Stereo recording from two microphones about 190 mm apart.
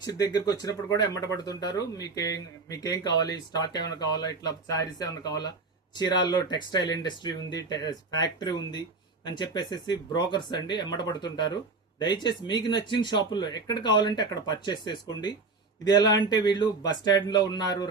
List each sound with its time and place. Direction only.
0.0 s speech: 20° left (ahead or behind)